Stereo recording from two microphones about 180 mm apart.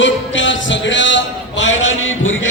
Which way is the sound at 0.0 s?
90° left.